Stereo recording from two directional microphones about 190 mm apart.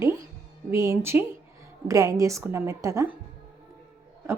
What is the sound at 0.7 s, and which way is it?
A woman's voice, 15° right (ahead or behind).